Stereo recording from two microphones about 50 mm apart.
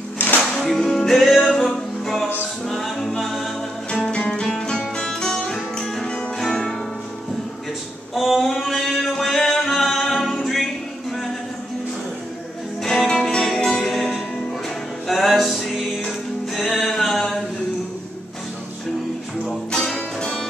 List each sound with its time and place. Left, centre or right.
0.4 s music: centre
3.0 s a capella: centre
3.3 s music: centre
3.9 s music: centre
6.0 s music: centre
8.1 s music: centre
12.8 s music: centre
13.8 s music: centre
19.8 s music: centre